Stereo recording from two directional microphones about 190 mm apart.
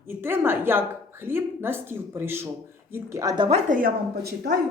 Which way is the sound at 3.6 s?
45° right (ahead or behind).